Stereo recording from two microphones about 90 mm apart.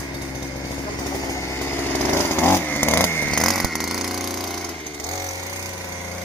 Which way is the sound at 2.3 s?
25° left (ahead or behind).